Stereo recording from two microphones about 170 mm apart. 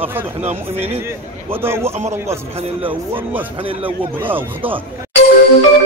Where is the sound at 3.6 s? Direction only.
30° right (ahead or behind).